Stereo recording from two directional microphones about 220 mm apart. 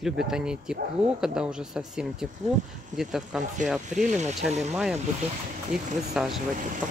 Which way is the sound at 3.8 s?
35° right (ahead or behind).